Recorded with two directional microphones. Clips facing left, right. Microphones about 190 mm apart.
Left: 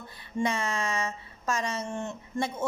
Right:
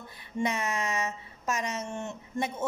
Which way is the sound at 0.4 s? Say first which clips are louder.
Left 1 dB; 20° right (ahead or behind).